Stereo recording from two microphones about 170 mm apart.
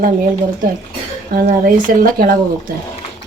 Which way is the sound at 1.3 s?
55° right (ahead or behind).